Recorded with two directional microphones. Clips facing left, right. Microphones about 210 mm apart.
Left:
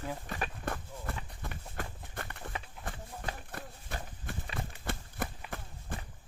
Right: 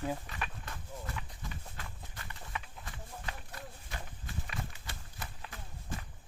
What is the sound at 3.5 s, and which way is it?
Horse, 55° left (ahead or behind).